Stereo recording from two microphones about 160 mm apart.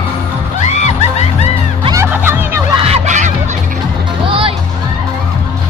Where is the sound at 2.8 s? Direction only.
45° right (ahead or behind).